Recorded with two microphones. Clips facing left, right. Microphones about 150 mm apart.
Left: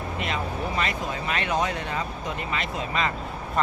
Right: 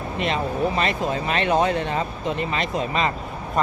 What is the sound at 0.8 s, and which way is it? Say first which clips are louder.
Speech: right 5 dB; 30° right (ahead or behind).